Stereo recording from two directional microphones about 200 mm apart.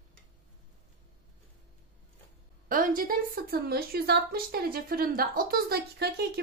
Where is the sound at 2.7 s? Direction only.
45° right (ahead or behind).